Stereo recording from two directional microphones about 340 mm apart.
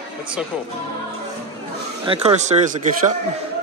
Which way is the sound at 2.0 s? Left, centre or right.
Centre.